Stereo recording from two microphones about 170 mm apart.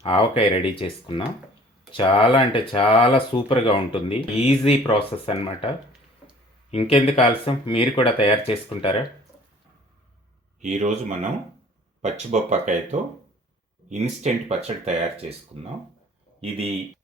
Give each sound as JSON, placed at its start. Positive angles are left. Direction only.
{"t": 0.0, "sound": "speech", "side_deg": 35}
{"t": 10.6, "sound": "speech", "side_deg": -45}